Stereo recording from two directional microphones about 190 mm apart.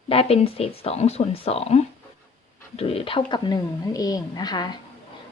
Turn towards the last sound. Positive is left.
turn(degrees=20)  # may be behind; listen again after turning